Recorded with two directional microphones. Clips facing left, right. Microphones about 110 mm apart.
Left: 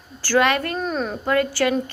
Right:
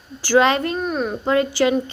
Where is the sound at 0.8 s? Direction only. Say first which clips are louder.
Right 2 dB; 5° right (ahead or behind).